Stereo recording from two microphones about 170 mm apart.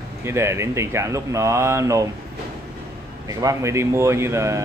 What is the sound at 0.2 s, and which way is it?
Speech, 15° right (ahead or behind).